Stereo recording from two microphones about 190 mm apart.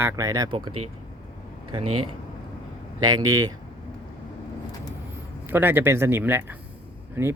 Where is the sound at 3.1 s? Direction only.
20° right (ahead or behind).